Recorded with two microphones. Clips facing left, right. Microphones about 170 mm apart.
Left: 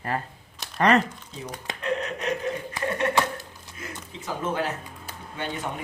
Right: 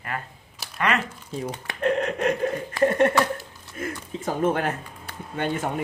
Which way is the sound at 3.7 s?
50° right (ahead or behind).